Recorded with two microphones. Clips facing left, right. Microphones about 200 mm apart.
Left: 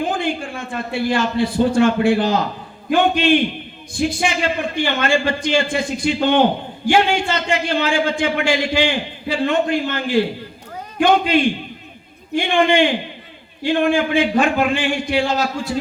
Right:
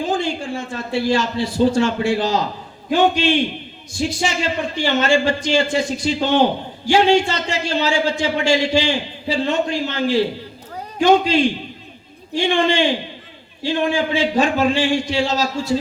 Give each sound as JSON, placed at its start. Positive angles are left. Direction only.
{"t": 0.0, "sound": "a man's voice", "side_deg": 55}